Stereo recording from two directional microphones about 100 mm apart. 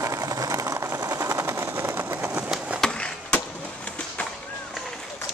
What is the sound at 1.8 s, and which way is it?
Vehicle, 20° right (ahead or behind).